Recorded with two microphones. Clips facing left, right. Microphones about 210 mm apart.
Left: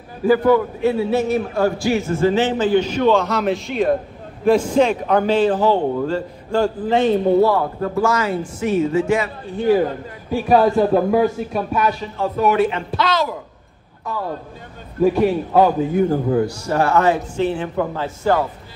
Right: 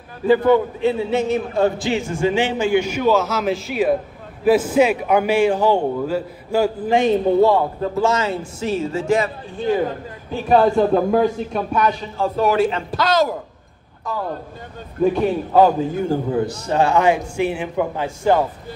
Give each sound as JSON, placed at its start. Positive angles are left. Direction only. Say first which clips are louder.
{"t": 0.3, "sound": "a man's voice", "louder": "even", "side_deg": -20}
{"t": 10.3, "sound": "a man's voice", "louder": "left 1 dB", "side_deg": 0}
{"t": 12.2, "sound": "speech", "louder": "even", "side_deg": -30}
{"t": 15.0, "sound": "a man's voice", "louder": "left 2 dB", "side_deg": 0}
{"t": 16.1, "sound": "a man's voice", "louder": "left 2 dB", "side_deg": -20}